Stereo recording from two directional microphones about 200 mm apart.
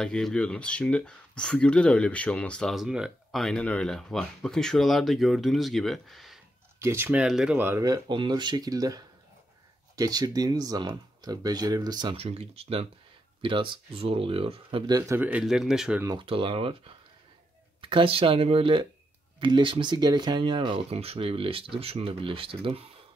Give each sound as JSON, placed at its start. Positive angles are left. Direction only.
{"t": 0.0, "sound": "speech", "side_deg": 5}
{"t": 6.8, "sound": "speech", "side_deg": -10}
{"t": 16.0, "sound": "speech", "side_deg": -20}